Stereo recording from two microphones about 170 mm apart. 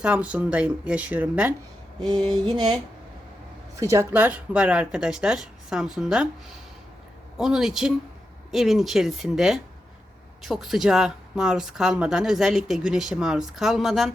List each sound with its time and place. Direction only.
0.0 s speech: 5° right (ahead or behind)
2.3 s a sound: 25° right (ahead or behind)
3.8 s speech: 15° right (ahead or behind)
7.3 s speech: centre (ahead or behind)